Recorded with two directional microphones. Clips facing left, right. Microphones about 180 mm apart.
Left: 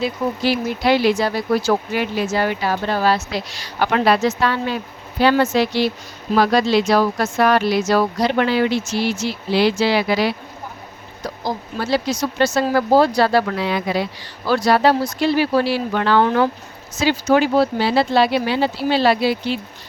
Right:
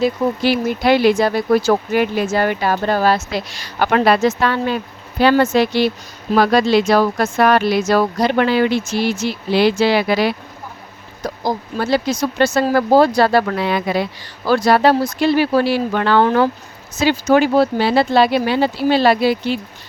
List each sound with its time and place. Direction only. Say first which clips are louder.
0.0 s speech: right 4 dB; 50° right (ahead or behind)